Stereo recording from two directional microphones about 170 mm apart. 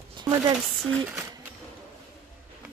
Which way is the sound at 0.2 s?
25° right (ahead or behind).